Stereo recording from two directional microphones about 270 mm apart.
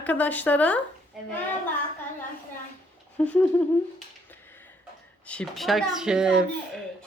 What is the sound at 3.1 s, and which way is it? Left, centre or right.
Speech, centre.